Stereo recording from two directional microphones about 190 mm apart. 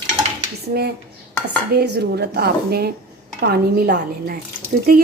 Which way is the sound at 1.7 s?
60° right (ahead or behind).